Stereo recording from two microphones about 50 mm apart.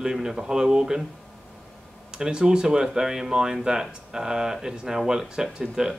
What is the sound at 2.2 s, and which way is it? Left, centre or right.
Speech, centre.